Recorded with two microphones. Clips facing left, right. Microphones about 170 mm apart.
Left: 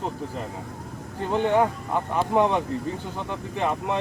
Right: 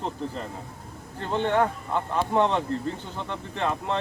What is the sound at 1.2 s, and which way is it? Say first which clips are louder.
Speech: left 2 dB; 10° left (ahead or behind).